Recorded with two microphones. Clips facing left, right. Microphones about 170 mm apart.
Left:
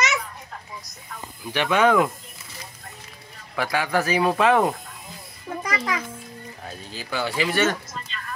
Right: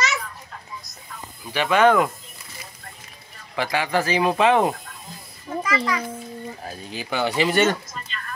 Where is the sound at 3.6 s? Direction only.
10° right (ahead or behind).